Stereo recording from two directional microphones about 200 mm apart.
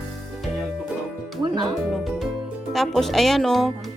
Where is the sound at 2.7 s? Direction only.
Centre (ahead or behind).